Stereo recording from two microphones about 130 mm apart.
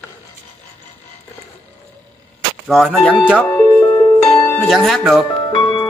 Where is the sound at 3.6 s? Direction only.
30° left (ahead or behind).